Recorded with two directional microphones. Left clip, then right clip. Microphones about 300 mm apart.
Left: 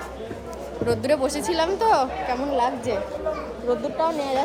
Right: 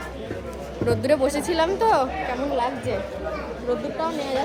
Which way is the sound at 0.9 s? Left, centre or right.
Centre.